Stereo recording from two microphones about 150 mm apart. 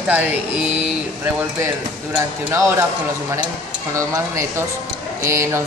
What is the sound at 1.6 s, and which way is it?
Speech, 20° right (ahead or behind).